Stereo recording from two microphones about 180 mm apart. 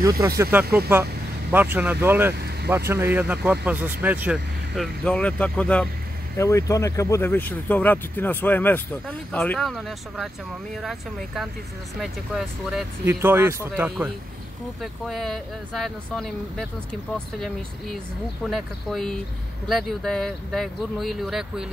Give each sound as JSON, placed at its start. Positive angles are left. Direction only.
{"t": 0.4, "sound": "speech", "side_deg": -10}
{"t": 2.3, "sound": "vehicle", "side_deg": -65}
{"t": 2.9, "sound": "speech", "side_deg": -15}